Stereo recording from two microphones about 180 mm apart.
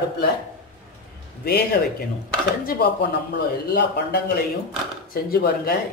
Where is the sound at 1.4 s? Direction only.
60° left (ahead or behind).